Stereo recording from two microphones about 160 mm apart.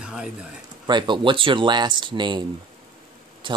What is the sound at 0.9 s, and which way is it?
Speech, 30° right (ahead or behind).